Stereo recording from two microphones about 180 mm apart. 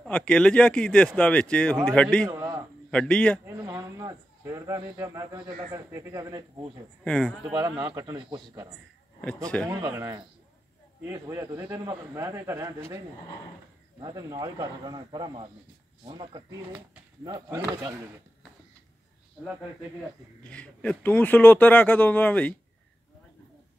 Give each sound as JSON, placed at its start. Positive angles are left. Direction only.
{"t": 0.0, "sound": "speech", "side_deg": 5}
{"t": 2.2, "sound": "a sound", "side_deg": -15}
{"t": 2.9, "sound": "speech", "side_deg": 5}
{"t": 3.4, "sound": "speech", "side_deg": -20}
{"t": 7.1, "sound": "speech", "side_deg": 5}
{"t": 7.5, "sound": "speech", "side_deg": -25}
{"t": 9.7, "sound": "a man's voice", "side_deg": -20}
{"t": 14.0, "sound": "speech", "side_deg": -20}
{"t": 20.4, "sound": "speech", "side_deg": 5}